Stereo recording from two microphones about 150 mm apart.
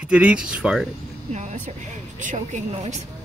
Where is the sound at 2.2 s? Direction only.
55° right (ahead or behind).